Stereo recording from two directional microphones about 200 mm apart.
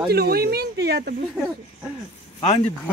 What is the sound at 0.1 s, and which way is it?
Speech, 50° right (ahead or behind).